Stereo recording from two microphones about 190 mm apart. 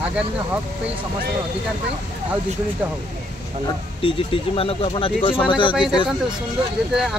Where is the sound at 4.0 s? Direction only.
30° left (ahead or behind).